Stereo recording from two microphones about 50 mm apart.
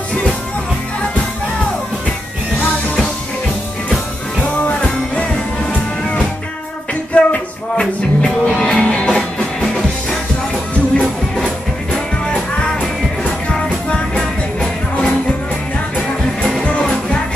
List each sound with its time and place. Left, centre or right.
4.6 s music: left
7.2 s music: left
10.5 s music: centre
12.5 s music: centre